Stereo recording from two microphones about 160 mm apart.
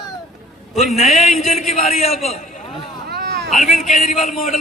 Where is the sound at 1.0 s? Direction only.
50° left (ahead or behind).